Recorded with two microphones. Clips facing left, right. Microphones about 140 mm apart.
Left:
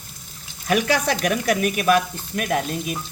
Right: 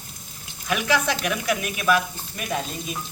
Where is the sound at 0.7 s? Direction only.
45° left (ahead or behind); by 3.0 s 65° left (ahead or behind).